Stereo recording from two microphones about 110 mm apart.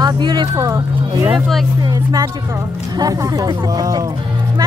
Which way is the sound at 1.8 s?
35° right (ahead or behind).